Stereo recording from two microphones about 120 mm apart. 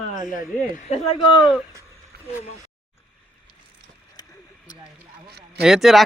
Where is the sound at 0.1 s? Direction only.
90° left.